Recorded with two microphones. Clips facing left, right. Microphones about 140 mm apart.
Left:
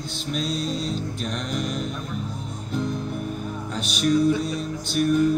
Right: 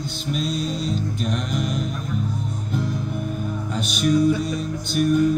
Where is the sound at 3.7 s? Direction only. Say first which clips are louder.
Right 1 dB; centre (ahead or behind).